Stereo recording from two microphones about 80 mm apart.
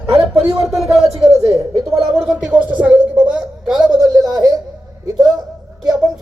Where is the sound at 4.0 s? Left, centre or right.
Right.